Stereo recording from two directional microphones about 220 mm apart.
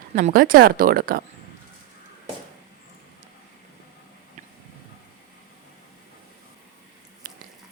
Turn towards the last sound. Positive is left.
turn(degrees=-40)  # may be behind; listen again after turning